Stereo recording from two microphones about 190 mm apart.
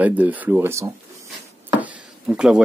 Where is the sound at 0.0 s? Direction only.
10° right (ahead or behind).